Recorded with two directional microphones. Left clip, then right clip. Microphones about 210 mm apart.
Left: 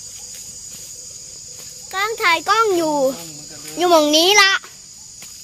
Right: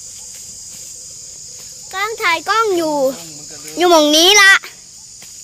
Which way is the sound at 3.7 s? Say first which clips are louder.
Right 3 dB; 30° right (ahead or behind).